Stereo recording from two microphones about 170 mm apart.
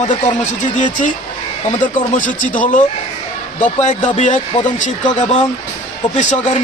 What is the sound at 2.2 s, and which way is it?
Speech, 50° left (ahead or behind).